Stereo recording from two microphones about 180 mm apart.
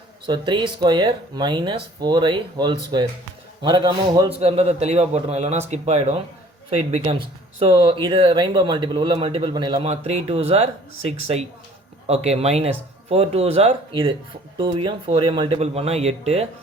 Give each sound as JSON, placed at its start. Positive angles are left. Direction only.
{"t": 0.3, "sound": "a man's voice", "side_deg": -25}